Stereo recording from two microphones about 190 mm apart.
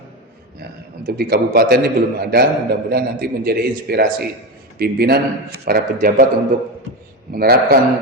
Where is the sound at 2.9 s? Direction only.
55° right (ahead or behind).